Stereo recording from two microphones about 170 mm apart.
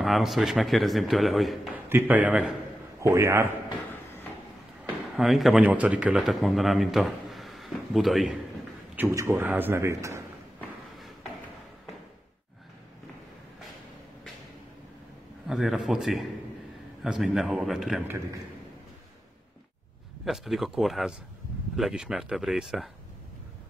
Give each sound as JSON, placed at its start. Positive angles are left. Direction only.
{"t": 0.0, "sound": "a man's voice", "side_deg": 0}
{"t": 1.9, "sound": "a man's voice", "side_deg": -10}
{"t": 4.8, "sound": "speech", "side_deg": -5}
{"t": 8.9, "sound": "a man's voice", "side_deg": -15}
{"t": 15.4, "sound": "a man's voice", "side_deg": 0}
{"t": 20.2, "sound": "a man's voice", "side_deg": 0}